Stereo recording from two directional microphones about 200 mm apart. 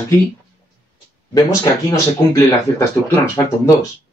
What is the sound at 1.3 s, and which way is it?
Speech, 15° left (ahead or behind).